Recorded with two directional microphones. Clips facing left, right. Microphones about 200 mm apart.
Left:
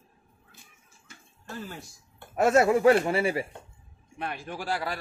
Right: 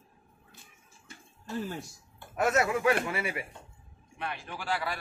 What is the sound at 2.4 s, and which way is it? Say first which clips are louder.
Speech: left 6 dB; 30° left (ahead or behind).